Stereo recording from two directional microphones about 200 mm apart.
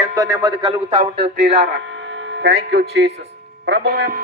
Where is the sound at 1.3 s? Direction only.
60° right (ahead or behind).